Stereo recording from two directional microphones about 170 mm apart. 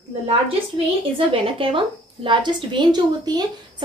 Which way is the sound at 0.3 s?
35° right (ahead or behind).